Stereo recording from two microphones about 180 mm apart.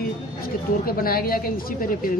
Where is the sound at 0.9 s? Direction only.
55° left (ahead or behind).